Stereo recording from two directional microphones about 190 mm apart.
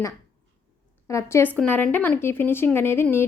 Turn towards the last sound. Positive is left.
turn(degrees=15)  # may be behind; listen again after turning